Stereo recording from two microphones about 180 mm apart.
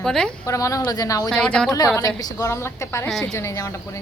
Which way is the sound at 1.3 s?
5° left (ahead or behind).